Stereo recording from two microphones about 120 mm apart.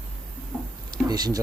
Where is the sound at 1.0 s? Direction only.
35° right (ahead or behind).